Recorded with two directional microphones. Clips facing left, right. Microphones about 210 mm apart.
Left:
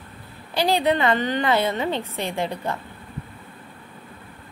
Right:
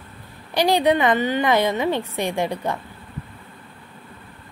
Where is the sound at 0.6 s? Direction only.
15° right (ahead or behind).